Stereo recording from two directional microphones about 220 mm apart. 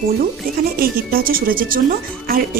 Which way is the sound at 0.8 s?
40° right (ahead or behind).